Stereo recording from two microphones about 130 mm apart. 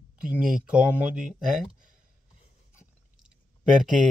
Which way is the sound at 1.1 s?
90° right.